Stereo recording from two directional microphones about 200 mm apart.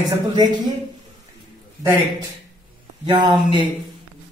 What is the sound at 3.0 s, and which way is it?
Speech, 25° right (ahead or behind).